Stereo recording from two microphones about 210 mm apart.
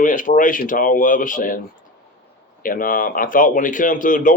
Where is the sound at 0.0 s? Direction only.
40° left (ahead or behind).